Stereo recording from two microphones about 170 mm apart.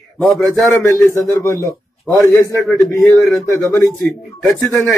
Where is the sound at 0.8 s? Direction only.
15° left (ahead or behind).